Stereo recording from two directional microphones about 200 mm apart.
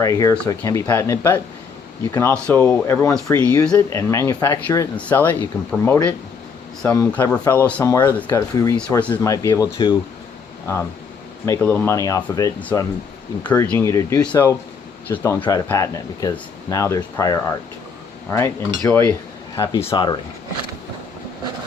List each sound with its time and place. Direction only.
0.0 s speech: 15° left (ahead or behind)
2.5 s speech: 10° left (ahead or behind)
11.4 s speech: 10° left (ahead or behind)